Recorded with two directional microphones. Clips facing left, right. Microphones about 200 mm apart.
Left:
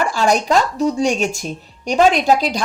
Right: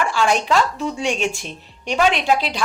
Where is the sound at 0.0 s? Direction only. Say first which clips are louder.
Left 2 dB; 40° left (ahead or behind).